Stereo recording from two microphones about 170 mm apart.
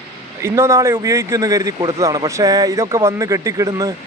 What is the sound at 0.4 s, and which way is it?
Speech, 15° right (ahead or behind).